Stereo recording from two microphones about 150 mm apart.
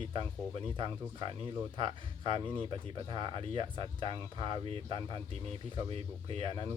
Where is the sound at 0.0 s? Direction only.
35° right (ahead or behind).